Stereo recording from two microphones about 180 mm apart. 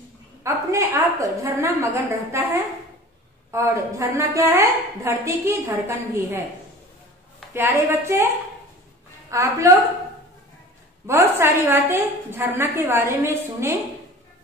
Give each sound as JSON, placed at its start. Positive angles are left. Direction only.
{"t": 0.4, "sound": "a sound", "side_deg": -15}
{"t": 2.3, "sound": "a woman's voice", "side_deg": -15}
{"t": 3.5, "sound": "a woman's voice", "side_deg": -15}
{"t": 7.5, "sound": "a woman's voice", "side_deg": -15}
{"t": 9.3, "sound": "a woman's voice", "side_deg": -15}
{"t": 11.1, "sound": "a woman's voice", "side_deg": -15}